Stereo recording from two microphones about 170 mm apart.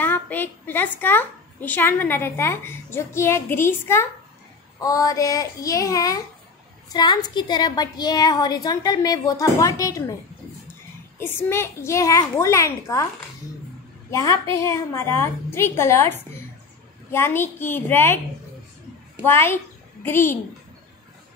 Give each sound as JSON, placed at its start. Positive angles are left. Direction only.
{"t": 0.0, "sound": "a woman's voice", "side_deg": 10}
{"t": 11.1, "sound": "a woman's voice", "side_deg": 15}
{"t": 14.1, "sound": "a woman's voice", "side_deg": 15}
{"t": 19.2, "sound": "a child's voice", "side_deg": 15}